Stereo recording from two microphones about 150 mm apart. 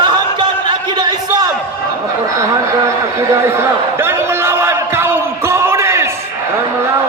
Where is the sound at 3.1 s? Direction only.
15° right (ahead or behind).